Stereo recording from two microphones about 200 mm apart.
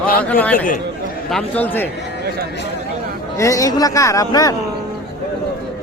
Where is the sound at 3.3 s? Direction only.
15° left (ahead or behind).